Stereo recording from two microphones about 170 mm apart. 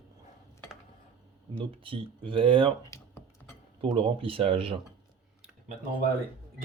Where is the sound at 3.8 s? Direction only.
30° right (ahead or behind).